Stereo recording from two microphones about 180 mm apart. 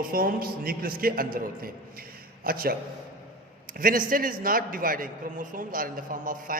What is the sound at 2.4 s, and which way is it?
A man's voice, 55° right (ahead or behind).